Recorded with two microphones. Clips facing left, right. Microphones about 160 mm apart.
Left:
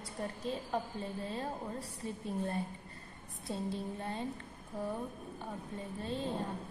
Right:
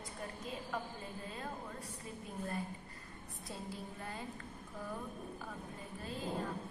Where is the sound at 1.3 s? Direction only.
30° left (ahead or behind).